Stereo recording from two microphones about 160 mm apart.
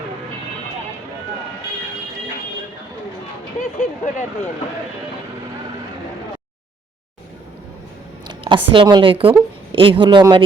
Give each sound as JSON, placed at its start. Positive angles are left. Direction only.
{"t": 3.6, "sound": "speech", "side_deg": 50}
{"t": 8.3, "sound": "a woman's voice", "side_deg": -30}